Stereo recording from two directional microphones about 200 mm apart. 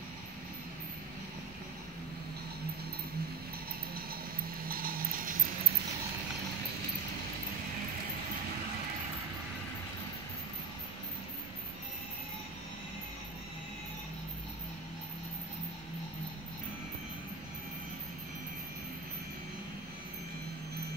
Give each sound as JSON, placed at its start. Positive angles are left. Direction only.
{"t": 4.6, "sound": "vehicle", "side_deg": -45}